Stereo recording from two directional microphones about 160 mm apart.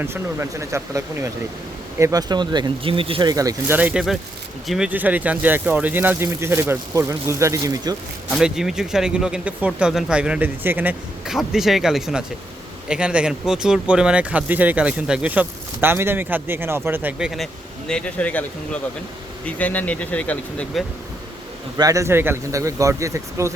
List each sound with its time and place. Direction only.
0.0 s speech: 15° right (ahead or behind)
3.8 s speech: 5° right (ahead or behind)
8.3 s speech: 5° right (ahead or behind)
21.8 s speech: 20° right (ahead or behind)